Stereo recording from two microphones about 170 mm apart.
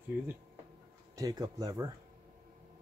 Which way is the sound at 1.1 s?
20° right (ahead or behind).